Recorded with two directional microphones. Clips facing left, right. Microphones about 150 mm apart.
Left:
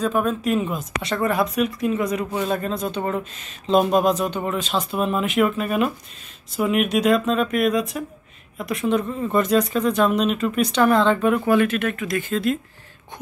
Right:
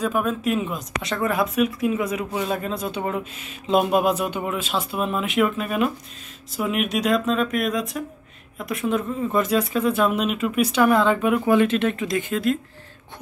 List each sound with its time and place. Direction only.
0.0 s speech: 5° right (ahead or behind)
11.5 s speech: 25° right (ahead or behind)
12.3 s speech: 5° right (ahead or behind)